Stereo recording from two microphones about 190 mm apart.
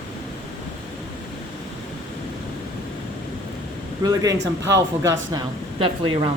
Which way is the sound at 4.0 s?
20° right (ahead or behind).